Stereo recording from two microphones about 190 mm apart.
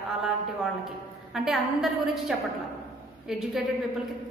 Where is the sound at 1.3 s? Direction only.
Centre (ahead or behind).